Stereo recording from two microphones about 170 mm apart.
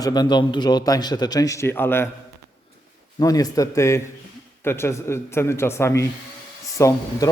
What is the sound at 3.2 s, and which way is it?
A man's voice, 20° left (ahead or behind).